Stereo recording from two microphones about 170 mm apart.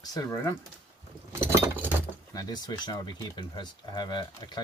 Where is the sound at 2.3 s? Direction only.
25° left (ahead or behind).